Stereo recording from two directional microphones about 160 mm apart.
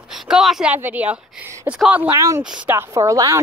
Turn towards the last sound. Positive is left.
turn(degrees=-20)  # may be behind; listen again after turning